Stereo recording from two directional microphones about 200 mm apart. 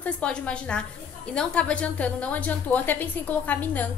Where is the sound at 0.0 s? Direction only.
5° left (ahead or behind).